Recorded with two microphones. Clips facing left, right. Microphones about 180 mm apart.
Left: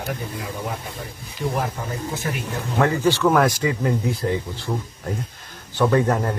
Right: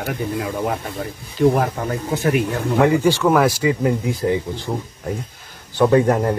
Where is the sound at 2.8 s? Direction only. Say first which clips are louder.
Right 2 dB; 10° right (ahead or behind).